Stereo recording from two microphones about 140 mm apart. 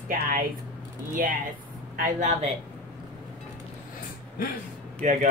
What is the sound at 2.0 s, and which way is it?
Speech, 65° right (ahead or behind).